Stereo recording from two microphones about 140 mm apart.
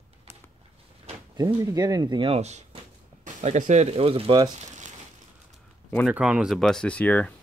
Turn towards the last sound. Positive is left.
turn(degrees=10)  # may be behind; listen again after turning